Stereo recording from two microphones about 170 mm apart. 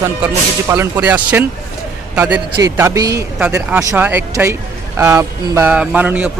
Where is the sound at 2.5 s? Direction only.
20° right (ahead or behind).